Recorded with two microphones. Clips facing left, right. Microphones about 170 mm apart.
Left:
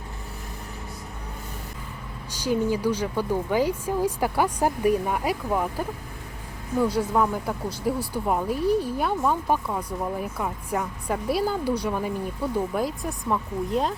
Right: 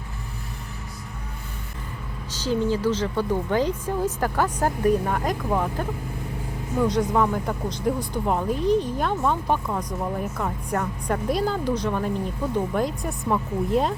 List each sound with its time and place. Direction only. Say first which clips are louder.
2.3 s speech: even; 10° left (ahead or behind)